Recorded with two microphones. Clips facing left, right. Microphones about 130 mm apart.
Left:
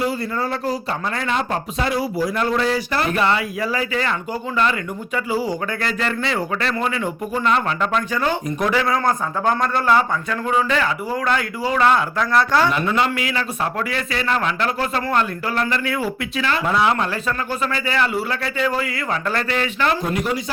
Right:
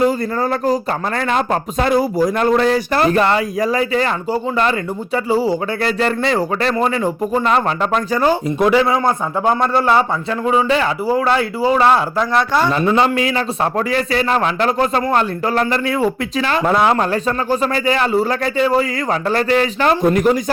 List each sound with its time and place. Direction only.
0.5 s a man's voice: 45° right (ahead or behind)